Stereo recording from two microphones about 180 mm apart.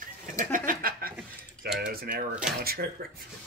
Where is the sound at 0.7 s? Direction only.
55° right (ahead or behind).